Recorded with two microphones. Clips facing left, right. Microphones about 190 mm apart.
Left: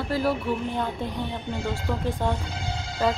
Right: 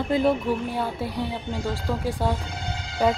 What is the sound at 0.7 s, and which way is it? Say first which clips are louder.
A woman's voice: right 1 dB; 10° right (ahead or behind).